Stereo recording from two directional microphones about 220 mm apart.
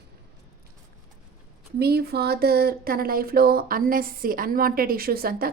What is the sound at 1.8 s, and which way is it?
Speech, 45° right (ahead or behind).